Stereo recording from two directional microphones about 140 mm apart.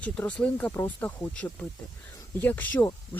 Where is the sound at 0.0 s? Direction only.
10° left (ahead or behind).